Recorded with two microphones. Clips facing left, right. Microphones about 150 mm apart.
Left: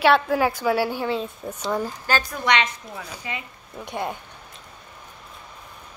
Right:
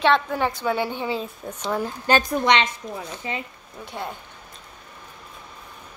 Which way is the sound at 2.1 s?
20° right (ahead or behind).